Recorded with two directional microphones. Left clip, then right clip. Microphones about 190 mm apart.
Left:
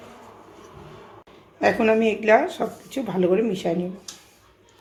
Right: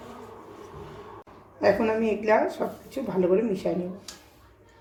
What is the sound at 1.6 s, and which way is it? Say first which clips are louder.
Speech: left 4 dB; 40° left (ahead or behind).